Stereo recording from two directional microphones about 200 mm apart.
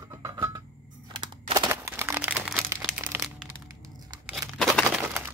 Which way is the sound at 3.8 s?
20° right (ahead or behind).